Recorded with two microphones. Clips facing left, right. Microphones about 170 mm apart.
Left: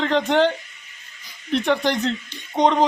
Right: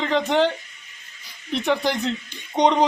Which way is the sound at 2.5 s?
20° right (ahead or behind).